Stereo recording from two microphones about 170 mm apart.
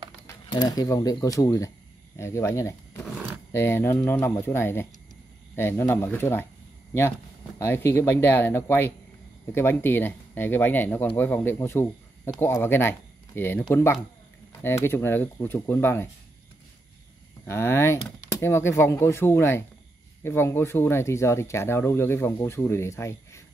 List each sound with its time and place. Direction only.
0.5 s speech: 25° left (ahead or behind)
17.5 s speech: 15° left (ahead or behind)